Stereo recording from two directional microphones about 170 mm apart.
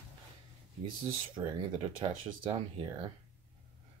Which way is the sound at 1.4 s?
25° right (ahead or behind).